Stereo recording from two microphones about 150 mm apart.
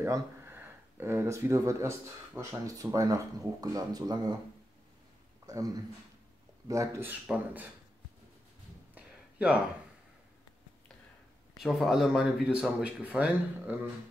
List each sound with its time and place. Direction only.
0.0 s speech: 15° right (ahead or behind)
5.5 s speech: 25° right (ahead or behind)
8.9 s a sound: 5° right (ahead or behind)
11.5 s speech: centre (ahead or behind)